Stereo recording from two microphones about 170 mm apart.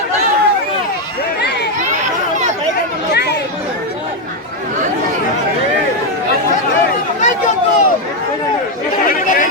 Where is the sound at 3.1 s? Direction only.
75° left (ahead or behind).